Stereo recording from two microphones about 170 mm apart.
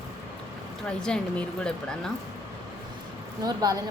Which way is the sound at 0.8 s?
5° left (ahead or behind).